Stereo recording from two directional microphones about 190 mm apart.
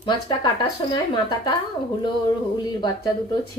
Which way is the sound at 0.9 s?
25° left (ahead or behind).